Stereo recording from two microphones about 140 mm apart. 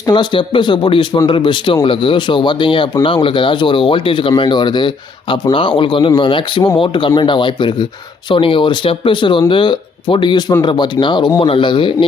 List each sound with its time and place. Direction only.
0.0 s speech: 30° left (ahead or behind)